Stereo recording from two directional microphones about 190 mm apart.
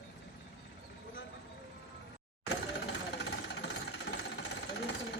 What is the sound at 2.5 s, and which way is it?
Jackhammer, 65° left (ahead or behind).